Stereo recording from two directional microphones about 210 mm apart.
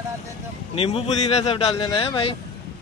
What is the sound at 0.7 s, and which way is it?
Speech, 25° left (ahead or behind).